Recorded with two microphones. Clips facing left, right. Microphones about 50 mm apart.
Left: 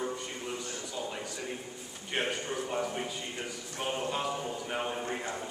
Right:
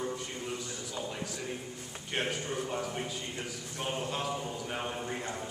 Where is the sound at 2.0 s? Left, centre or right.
Centre.